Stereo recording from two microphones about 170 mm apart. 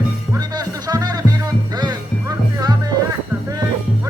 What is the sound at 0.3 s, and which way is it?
Music, 20° right (ahead or behind).